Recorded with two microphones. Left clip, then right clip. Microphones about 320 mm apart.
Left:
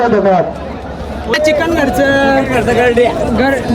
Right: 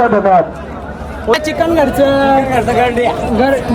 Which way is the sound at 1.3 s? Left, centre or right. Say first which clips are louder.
Left 1 dB; centre.